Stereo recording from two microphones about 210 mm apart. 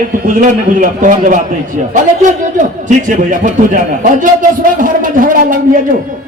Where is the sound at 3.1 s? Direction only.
35° right (ahead or behind).